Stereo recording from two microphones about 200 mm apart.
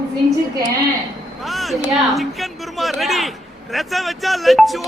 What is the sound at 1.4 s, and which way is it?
A man's voice, centre (ahead or behind).